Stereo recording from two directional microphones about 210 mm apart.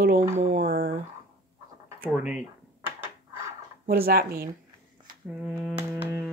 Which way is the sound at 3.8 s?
45° right (ahead or behind).